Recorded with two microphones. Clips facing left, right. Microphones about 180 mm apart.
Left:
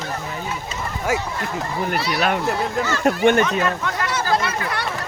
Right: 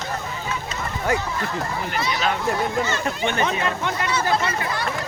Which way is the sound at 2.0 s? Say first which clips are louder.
Left 2 dB; 65° left (ahead or behind).